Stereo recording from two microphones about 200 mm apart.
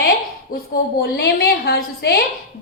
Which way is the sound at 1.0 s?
50° left (ahead or behind).